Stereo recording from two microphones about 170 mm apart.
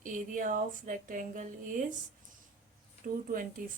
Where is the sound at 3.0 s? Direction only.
55° right (ahead or behind).